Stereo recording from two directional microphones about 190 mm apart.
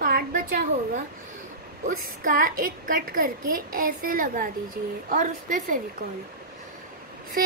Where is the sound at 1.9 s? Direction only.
45° right (ahead or behind).